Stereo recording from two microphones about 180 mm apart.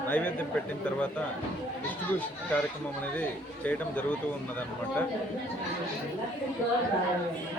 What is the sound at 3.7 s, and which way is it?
Speech, 10° left (ahead or behind).